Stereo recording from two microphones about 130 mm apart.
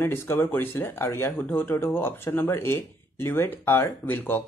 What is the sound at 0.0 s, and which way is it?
Speech, 20° left (ahead or behind).